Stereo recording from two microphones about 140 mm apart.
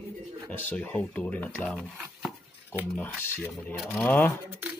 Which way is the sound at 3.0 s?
15° left (ahead or behind).